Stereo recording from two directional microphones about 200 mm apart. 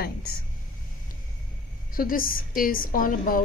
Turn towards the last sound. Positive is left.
turn(degrees=45)  # may be behind; listen again after turning